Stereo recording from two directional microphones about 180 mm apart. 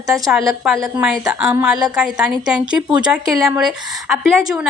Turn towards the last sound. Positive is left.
turn(degrees=0)  # may be behind; listen again after turning